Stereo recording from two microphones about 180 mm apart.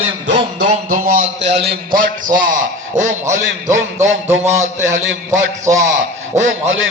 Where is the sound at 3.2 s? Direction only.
15° right (ahead or behind).